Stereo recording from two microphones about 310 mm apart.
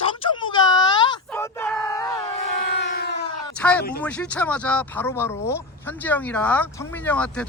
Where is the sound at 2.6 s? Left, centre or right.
Left.